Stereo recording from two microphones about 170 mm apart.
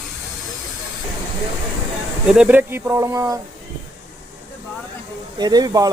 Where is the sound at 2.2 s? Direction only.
5° right (ahead or behind).